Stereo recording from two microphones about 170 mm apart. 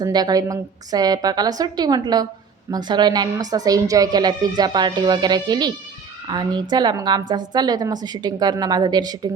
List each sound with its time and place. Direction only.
0.0 s a woman's voice: 25° right (ahead or behind)